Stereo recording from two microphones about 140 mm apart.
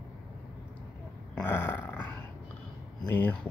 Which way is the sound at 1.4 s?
15° left (ahead or behind).